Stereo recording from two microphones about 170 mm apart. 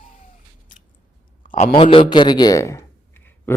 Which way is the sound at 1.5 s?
50° left (ahead or behind).